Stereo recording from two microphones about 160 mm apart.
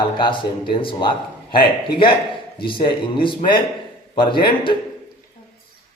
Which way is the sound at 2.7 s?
30° left (ahead or behind).